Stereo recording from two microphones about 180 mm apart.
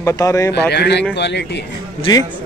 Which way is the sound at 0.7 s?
70° left (ahead or behind).